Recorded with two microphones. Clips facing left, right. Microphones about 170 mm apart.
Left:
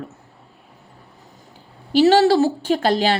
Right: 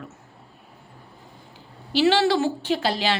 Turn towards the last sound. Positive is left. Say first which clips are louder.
# left 5 dB
turn(degrees=45)  # may be behind; listen again after turning